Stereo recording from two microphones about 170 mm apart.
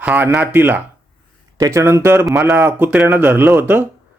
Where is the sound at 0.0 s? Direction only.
10° right (ahead or behind).